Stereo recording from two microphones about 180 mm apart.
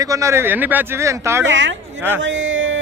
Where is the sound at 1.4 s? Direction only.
90° right.